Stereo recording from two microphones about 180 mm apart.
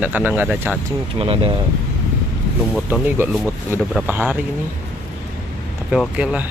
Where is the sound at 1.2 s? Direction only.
30° right (ahead or behind).